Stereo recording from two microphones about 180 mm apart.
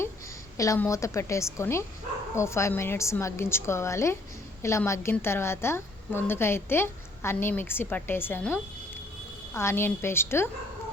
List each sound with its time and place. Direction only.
0.5 s a woman's voice: 15° left (ahead or behind)